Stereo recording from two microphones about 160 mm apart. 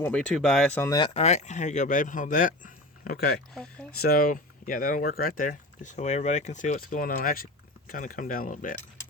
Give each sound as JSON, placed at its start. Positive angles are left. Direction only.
{"t": 0.0, "sound": "speech", "side_deg": 5}
{"t": 0.8, "sound": "speech", "side_deg": 25}
{"t": 1.1, "sound": "speech", "side_deg": 40}